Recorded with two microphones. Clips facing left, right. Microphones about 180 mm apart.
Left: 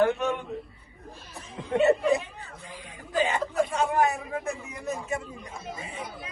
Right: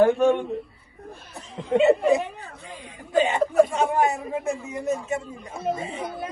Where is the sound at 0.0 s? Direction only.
35° right (ahead or behind).